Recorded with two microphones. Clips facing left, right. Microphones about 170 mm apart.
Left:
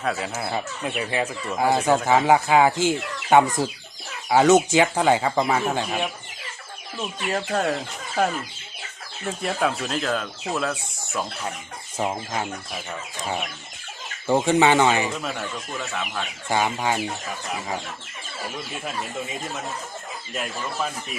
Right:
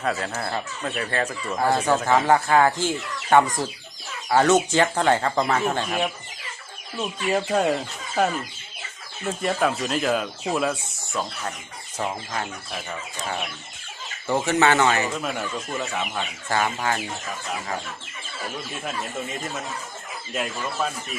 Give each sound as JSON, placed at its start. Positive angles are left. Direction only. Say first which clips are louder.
{"t": 0.0, "sound": "speech", "louder": "even", "side_deg": 0}
{"t": 7.3, "sound": "speech", "louder": "right 3 dB", "side_deg": -10}
{"t": 9.2, "sound": "speech", "louder": "right 1 dB", "side_deg": 0}
{"t": 11.1, "sound": "speech", "louder": "even", "side_deg": 5}
{"t": 11.9, "sound": "speech", "louder": "left 2 dB", "side_deg": 15}
{"t": 14.3, "sound": "speech", "louder": "left 2 dB", "side_deg": 15}
{"t": 15.2, "sound": "speech", "louder": "right 2 dB", "side_deg": -5}
{"t": 16.5, "sound": "speech", "louder": "left 2 dB", "side_deg": 15}
{"t": 20.3, "sound": "speech", "louder": "right 2 dB", "side_deg": 0}